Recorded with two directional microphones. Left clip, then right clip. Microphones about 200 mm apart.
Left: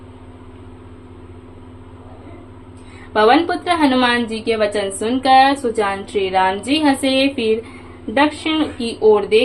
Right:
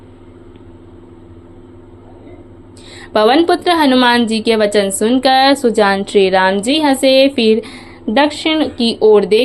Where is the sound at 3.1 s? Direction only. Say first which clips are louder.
Right 3 dB; 35° right (ahead or behind).